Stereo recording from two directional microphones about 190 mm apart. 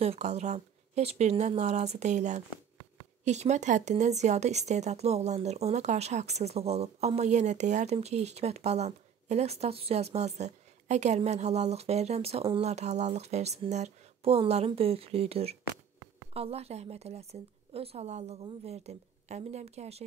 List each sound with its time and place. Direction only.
0.0 s speech: 35° right (ahead or behind)